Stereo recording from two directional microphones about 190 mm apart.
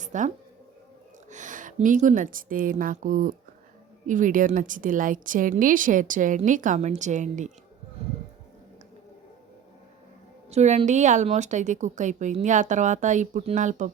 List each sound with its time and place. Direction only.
0.0 s speech: 40° right (ahead or behind)
1.3 s a woman's voice: 40° right (ahead or behind)
10.5 s a woman's voice: 35° right (ahead or behind)